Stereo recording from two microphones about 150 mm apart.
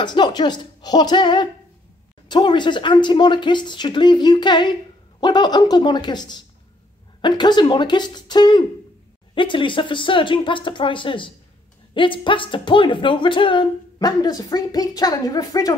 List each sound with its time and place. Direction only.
0.0 s speech: 30° left (ahead or behind)